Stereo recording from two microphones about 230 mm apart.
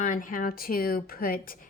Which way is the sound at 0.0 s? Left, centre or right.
Left.